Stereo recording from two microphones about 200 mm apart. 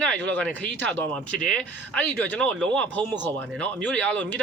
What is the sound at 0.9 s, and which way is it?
Speech, 10° left (ahead or behind).